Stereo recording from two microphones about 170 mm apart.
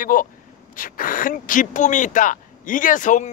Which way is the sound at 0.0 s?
55° left (ahead or behind).